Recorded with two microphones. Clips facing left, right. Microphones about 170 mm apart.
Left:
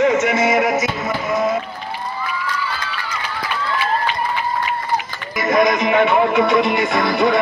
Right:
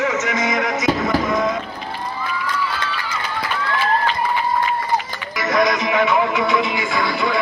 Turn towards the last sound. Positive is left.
turn(degrees=60)  # may be behind; listen again after turning